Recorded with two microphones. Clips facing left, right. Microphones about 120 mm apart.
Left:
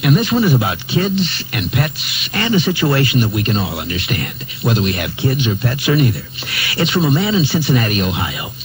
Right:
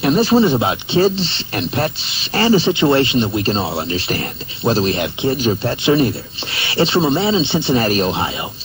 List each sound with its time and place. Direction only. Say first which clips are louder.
0.0 s speech: right 2 dB; 30° right (ahead or behind)